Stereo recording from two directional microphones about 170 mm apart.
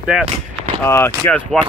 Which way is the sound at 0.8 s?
15° left (ahead or behind).